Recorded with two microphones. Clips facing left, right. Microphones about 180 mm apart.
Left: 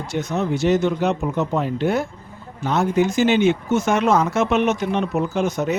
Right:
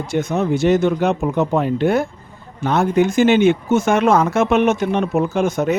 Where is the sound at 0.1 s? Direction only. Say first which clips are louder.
Right 4 dB; 50° right (ahead or behind).